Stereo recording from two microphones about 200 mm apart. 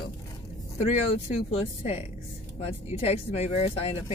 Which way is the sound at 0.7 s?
30° left (ahead or behind).